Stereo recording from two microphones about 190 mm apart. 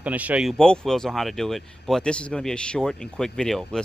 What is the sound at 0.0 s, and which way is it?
Speech, 10° right (ahead or behind).